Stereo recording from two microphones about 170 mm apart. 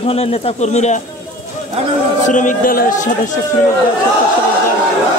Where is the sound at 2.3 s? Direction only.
50° left (ahead or behind).